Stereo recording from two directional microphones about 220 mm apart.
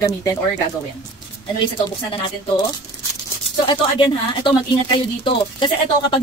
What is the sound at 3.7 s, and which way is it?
Speech, 20° left (ahead or behind).